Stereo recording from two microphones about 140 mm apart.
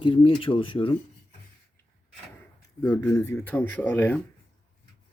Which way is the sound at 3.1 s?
20° left (ahead or behind).